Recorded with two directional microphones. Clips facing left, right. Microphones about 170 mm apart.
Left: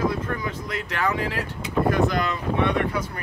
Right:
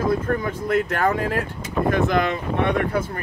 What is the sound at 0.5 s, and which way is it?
Speech, 50° right (ahead or behind).